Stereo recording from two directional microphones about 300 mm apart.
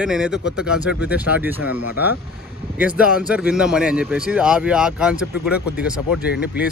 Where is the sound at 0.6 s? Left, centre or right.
Centre.